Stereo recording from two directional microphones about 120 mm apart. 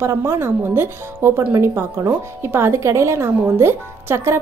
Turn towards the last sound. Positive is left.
turn(degrees=-20)  # may be behind; listen again after turning